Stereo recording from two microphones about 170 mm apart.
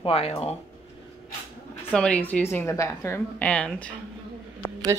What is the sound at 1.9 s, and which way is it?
Speech, 5° left (ahead or behind).